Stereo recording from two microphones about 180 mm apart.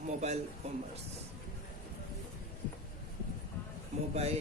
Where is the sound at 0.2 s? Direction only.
40° right (ahead or behind).